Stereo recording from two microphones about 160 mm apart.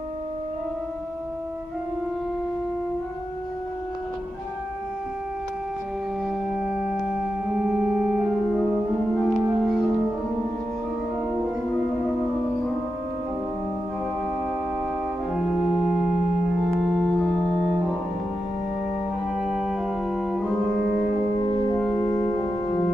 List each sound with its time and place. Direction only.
6.5 s music: 5° right (ahead or behind)
7.6 s organ: 10° right (ahead or behind)
9.1 s music: centre (ahead or behind)
15.3 s organ: centre (ahead or behind)
16.8 s music: centre (ahead or behind)
19.3 s organ: centre (ahead or behind)
21.7 s music: 5° left (ahead or behind)
22.0 s music: 20° left (ahead or behind)